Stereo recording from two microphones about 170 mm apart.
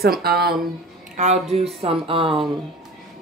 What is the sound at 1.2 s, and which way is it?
Speech, 40° right (ahead or behind).